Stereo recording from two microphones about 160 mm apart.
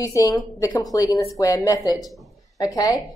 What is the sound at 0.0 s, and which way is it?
A woman's voice, 20° left (ahead or behind).